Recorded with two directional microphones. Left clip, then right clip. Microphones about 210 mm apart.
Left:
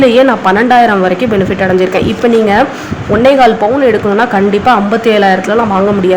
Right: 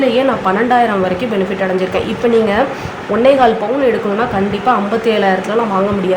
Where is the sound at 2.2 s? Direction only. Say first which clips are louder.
Left 4 dB; 25° left (ahead or behind).